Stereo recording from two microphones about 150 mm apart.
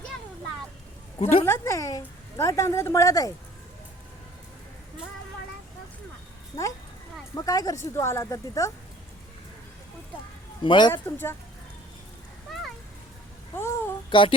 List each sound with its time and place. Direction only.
1.2 s speech: 40° left (ahead or behind)
1.5 s a woman's voice: 20° left (ahead or behind)
7.3 s a woman's voice: 25° left (ahead or behind)
10.6 s speech: 30° left (ahead or behind)
10.9 s speech: 15° left (ahead or behind)
12.5 s a sound: centre (ahead or behind)
13.6 s a sound: 15° left (ahead or behind)
14.1 s speech: 35° left (ahead or behind)